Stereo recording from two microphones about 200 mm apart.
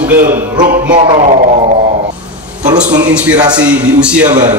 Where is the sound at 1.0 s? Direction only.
30° right (ahead or behind).